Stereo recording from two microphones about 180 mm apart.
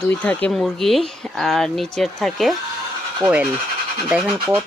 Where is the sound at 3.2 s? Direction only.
30° right (ahead or behind).